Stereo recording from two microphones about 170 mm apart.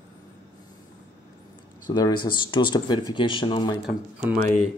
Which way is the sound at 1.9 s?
25° left (ahead or behind).